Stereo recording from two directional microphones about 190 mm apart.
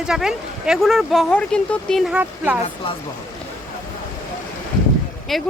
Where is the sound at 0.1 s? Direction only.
5° right (ahead or behind).